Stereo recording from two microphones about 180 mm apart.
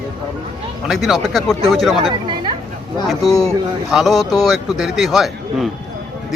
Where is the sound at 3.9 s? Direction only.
Centre (ahead or behind).